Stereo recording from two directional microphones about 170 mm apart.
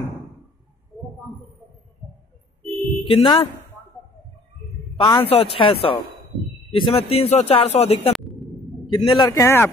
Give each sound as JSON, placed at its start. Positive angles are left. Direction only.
{"t": 3.1, "sound": "a man's voice", "side_deg": 35}
{"t": 4.9, "sound": "a man's voice", "side_deg": 25}